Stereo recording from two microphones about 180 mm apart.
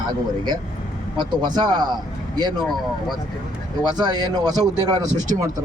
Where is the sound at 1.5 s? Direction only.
25° right (ahead or behind).